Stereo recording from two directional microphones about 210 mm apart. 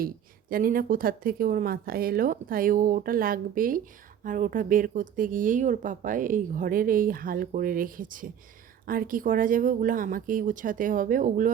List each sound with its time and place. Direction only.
0.5 s speech: 40° right (ahead or behind)